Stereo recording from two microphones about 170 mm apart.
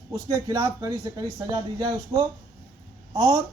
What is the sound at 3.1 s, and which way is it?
Speech, 20° right (ahead or behind).